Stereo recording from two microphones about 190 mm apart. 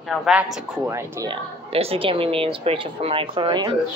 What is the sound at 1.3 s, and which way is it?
A woman's voice, 30° right (ahead or behind).